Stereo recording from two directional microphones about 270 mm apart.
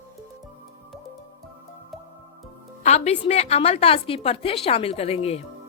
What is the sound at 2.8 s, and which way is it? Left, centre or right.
A woman's voice, left.